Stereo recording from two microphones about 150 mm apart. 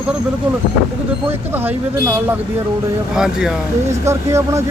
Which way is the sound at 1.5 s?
15° right (ahead or behind).